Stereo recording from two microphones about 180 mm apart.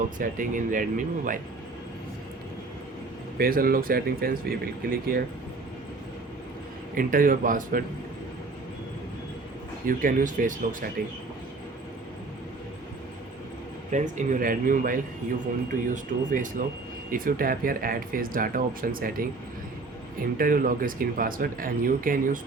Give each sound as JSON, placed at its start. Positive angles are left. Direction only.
{"t": 0.2, "sound": "speech", "side_deg": -45}
{"t": 3.3, "sound": "speech", "side_deg": -55}
{"t": 6.9, "sound": "speech", "side_deg": -50}
{"t": 9.8, "sound": "speech", "side_deg": -50}
{"t": 13.9, "sound": "speech", "side_deg": -45}
{"t": 20.4, "sound": "speech", "side_deg": -50}